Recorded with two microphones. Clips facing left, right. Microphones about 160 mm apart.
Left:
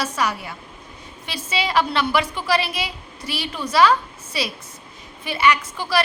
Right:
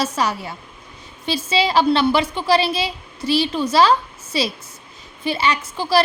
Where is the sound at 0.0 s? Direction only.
30° right (ahead or behind).